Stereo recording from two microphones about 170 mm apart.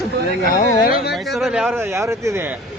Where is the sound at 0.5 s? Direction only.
55° left (ahead or behind).